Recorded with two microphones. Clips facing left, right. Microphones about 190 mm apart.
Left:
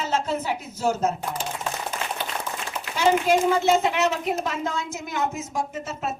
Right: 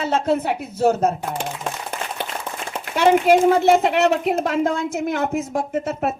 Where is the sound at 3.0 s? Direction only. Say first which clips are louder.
Right 5 dB; 55° right (ahead or behind).